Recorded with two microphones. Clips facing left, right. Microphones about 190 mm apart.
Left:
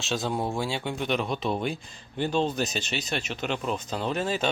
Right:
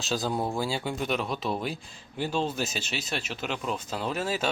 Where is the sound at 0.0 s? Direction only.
Centre (ahead or behind).